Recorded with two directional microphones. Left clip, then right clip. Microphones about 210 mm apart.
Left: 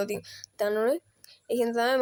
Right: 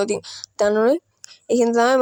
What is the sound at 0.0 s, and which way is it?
Speech, 30° right (ahead or behind).